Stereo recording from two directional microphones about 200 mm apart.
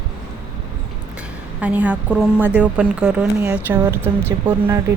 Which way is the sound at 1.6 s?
5° right (ahead or behind).